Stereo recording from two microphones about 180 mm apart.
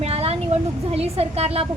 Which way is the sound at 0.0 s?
35° right (ahead or behind).